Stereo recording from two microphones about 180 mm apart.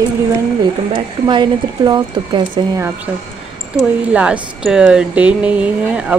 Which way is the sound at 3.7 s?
5° right (ahead or behind).